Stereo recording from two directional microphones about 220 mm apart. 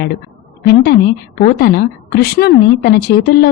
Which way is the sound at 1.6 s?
45° left (ahead or behind).